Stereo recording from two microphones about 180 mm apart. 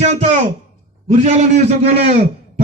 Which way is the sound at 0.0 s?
40° right (ahead or behind).